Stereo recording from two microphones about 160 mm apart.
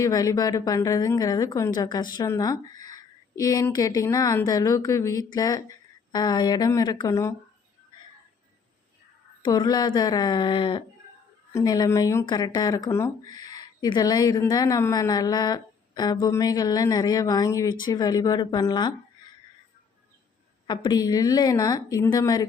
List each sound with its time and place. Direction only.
0.0 s a woman's voice: 20° left (ahead or behind)
9.4 s a woman's voice: 25° left (ahead or behind)
20.7 s a woman's voice: 25° left (ahead or behind)